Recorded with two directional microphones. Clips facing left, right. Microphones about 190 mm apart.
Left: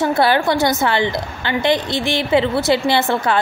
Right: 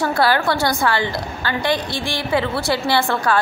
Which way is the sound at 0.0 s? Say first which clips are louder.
Left 2 dB; 20° left (ahead or behind).